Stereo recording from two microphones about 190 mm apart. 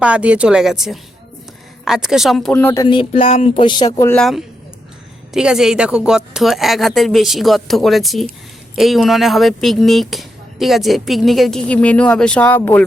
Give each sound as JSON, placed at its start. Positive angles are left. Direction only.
{"t": 0.0, "sound": "speech", "side_deg": -5}
{"t": 2.8, "sound": "speech", "side_deg": 25}
{"t": 4.2, "sound": "speech", "side_deg": 0}